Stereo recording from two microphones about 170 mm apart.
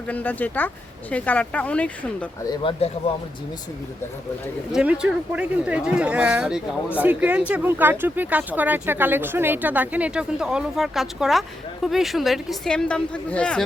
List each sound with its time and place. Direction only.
0.1 s speech: 10° left (ahead or behind)
2.5 s speech: 30° left (ahead or behind)
4.7 s speech: 5° right (ahead or behind)